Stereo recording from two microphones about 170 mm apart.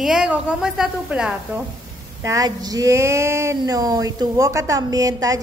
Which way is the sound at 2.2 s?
20° right (ahead or behind).